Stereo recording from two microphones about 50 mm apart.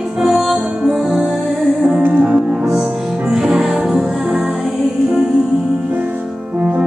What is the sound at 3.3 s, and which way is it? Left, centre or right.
Music, centre.